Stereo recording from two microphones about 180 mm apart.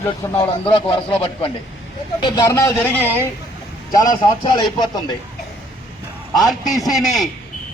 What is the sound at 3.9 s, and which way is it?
A man's voice, 20° left (ahead or behind).